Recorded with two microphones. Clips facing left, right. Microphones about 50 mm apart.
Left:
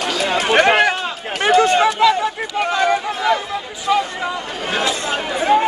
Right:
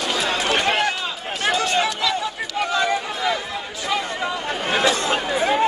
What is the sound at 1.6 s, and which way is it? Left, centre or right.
Run, left.